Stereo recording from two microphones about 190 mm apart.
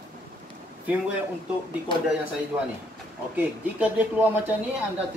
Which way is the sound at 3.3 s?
10° right (ahead or behind).